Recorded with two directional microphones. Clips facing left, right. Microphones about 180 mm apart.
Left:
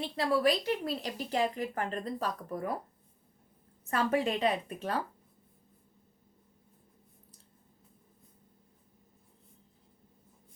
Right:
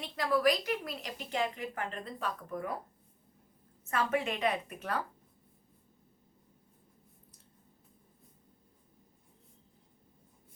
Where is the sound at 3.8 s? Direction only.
35° left (ahead or behind).